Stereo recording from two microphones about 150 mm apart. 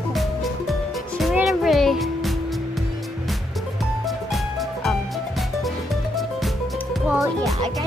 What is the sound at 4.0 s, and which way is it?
Music, centre (ahead or behind).